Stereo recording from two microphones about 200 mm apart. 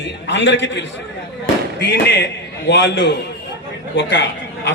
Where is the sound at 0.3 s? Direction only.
65° left (ahead or behind).